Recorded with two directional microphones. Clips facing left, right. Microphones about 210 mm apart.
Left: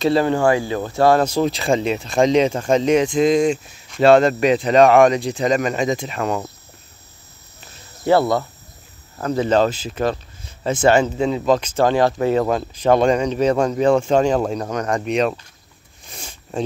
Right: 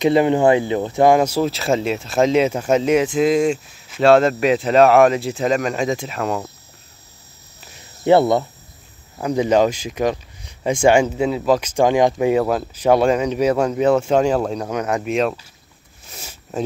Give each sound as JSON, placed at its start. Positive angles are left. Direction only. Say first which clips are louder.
{"t": 0.0, "sound": "speech", "louder": "right 2 dB", "side_deg": -20}
{"t": 8.0, "sound": "speech", "louder": "right 2 dB", "side_deg": -20}
{"t": 16.1, "sound": "a sound", "louder": "even", "side_deg": -5}